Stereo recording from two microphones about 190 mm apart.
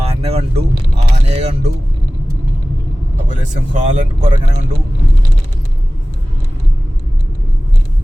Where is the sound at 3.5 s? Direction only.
40° right (ahead or behind).